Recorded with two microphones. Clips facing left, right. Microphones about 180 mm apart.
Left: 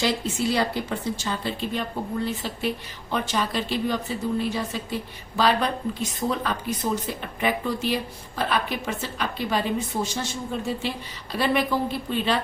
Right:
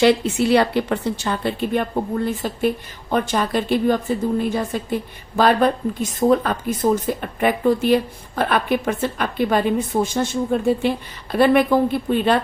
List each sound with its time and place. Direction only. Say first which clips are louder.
0.0 s a woman's voice: right 9 dB; 65° right (ahead or behind)